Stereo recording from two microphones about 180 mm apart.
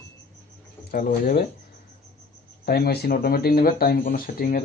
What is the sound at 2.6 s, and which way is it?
Speech, 60° left (ahead or behind).